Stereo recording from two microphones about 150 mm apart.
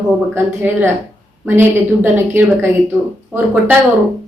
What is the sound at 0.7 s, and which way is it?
A woman's voice, 10° right (ahead or behind).